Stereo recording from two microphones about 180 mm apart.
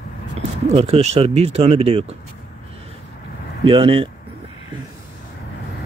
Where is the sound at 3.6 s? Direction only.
30° right (ahead or behind).